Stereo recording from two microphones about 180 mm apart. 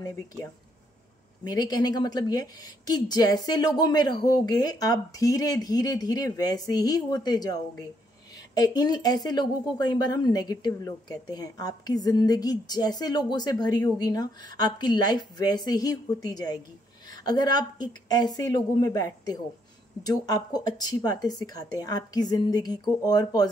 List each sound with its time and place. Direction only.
1.4 s speech: 20° left (ahead or behind)